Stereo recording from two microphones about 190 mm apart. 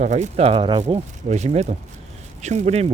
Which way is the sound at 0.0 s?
40° right (ahead or behind).